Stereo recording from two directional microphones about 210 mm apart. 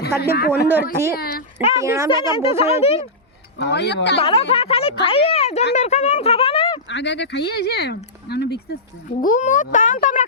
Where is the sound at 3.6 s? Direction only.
55° left (ahead or behind).